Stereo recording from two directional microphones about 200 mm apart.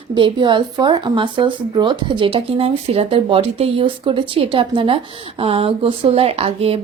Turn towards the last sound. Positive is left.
turn(degrees=-30)  # may be behind; listen again after turning